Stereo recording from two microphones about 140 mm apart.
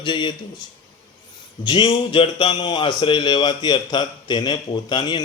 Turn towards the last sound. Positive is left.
turn(degrees=30)  # may be behind; listen again after turning